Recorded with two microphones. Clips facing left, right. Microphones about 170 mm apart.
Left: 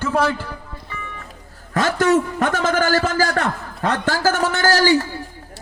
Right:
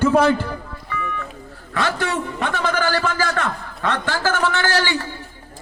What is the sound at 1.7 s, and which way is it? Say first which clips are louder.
A man's voice: left 6 dB; 40° left (ahead or behind).